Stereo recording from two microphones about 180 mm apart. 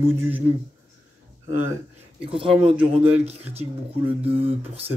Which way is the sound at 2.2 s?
30° right (ahead or behind).